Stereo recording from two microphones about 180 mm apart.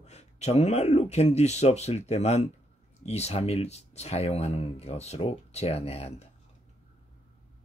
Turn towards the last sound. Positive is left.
turn(degrees=35)  # may be behind; listen again after turning